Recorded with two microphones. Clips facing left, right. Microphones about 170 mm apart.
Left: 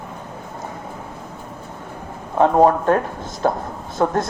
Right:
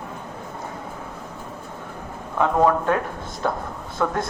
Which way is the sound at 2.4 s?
35° left (ahead or behind).